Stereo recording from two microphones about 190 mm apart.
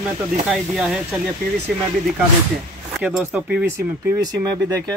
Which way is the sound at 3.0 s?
5° right (ahead or behind).